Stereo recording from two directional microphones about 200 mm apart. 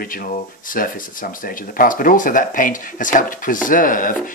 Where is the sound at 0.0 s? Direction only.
45° left (ahead or behind).